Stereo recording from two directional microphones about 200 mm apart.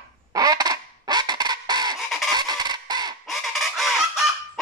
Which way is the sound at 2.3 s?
20° right (ahead or behind).